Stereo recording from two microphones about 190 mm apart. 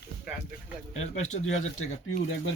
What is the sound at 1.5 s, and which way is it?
Speech, 90° left.